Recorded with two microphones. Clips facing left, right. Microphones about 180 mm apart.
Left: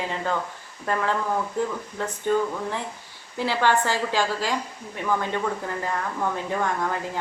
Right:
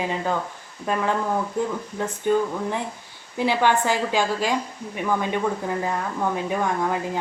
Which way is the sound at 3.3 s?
15° right (ahead or behind).